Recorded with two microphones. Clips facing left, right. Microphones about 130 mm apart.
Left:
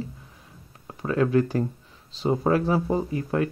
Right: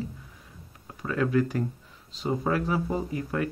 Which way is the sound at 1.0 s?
30° left (ahead or behind).